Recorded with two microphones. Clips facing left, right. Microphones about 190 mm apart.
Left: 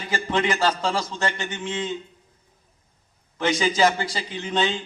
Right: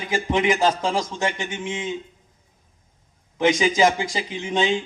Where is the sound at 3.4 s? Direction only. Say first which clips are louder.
Right 3 dB; 20° right (ahead or behind).